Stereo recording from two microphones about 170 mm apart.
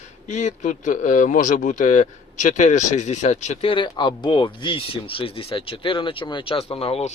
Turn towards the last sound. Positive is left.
turn(degrees=35)  # may be behind; listen again after turning